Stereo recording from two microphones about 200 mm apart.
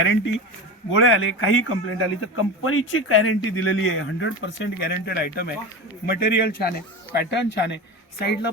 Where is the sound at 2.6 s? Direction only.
85° left.